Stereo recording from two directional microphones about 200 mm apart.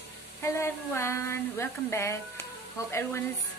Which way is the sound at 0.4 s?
15° left (ahead or behind).